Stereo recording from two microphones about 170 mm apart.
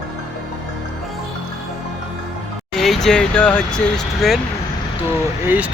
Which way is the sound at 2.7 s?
Centre (ahead or behind).